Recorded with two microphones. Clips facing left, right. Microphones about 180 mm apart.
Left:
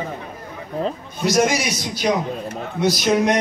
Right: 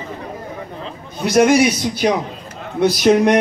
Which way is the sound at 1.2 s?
55° right (ahead or behind).